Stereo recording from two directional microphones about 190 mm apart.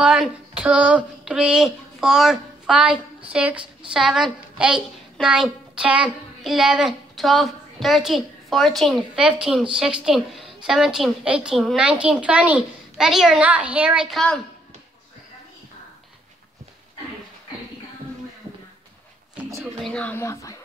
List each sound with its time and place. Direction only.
0.0 s speech: 5° right (ahead or behind)
2.9 s a woman's voice: 30° right (ahead or behind)
3.3 s a woman's voice: 5° right (ahead or behind)
19.3 s a sound: 5° right (ahead or behind)
19.9 s speech: 10° left (ahead or behind)